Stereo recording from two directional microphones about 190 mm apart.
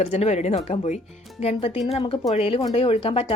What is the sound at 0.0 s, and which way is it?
A woman's voice, 35° left (ahead or behind).